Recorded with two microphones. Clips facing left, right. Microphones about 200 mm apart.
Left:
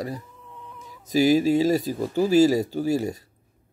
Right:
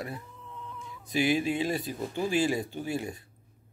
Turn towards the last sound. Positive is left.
turn(degrees=40)  # may be behind; listen again after turning